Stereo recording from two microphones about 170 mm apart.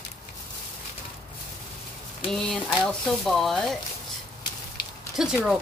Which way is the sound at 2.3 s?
Centre (ahead or behind).